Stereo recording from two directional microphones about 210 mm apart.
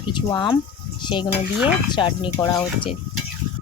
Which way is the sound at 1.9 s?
20° left (ahead or behind).